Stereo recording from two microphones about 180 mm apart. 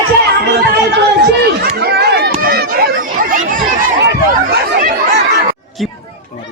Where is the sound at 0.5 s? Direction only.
65° right (ahead or behind).